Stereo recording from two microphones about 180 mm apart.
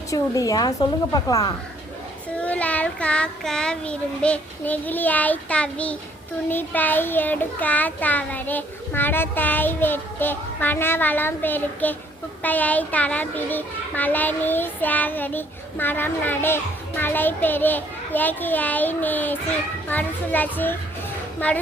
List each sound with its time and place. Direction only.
0.1 s a woman's voice: 20° left (ahead or behind)
2.4 s a child's voice: 10° left (ahead or behind)